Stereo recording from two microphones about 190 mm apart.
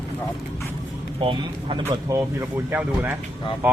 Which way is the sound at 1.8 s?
15° right (ahead or behind).